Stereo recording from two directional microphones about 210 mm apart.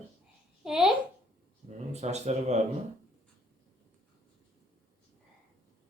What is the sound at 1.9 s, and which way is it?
Speech, 30° right (ahead or behind).